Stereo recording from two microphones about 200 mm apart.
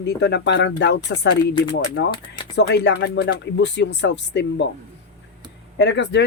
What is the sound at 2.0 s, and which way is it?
Speech, 20° left (ahead or behind).